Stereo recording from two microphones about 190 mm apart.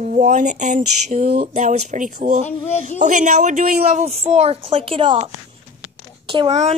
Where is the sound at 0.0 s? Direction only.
40° right (ahead or behind).